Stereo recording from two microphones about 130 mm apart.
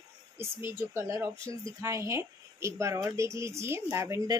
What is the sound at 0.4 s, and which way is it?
Speech, 20° right (ahead or behind).